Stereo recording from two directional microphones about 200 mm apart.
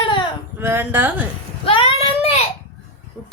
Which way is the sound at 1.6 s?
25° left (ahead or behind).